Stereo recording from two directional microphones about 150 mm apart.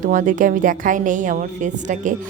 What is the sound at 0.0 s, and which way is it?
A woman's voice, 55° right (ahead or behind).